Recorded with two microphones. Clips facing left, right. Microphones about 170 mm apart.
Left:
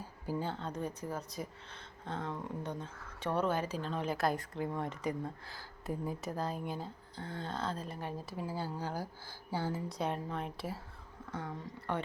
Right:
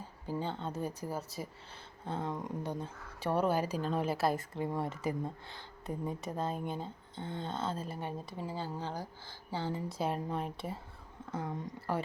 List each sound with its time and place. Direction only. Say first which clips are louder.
0.3 s speech: even; 5° left (ahead or behind)
0.7 s speech: right 1 dB; 10° right (ahead or behind); by 9.8 s 10° left (ahead or behind)
9.9 s speech: right 2 dB; 5° right (ahead or behind)
11.3 s speech: right 3 dB; 25° right (ahead or behind)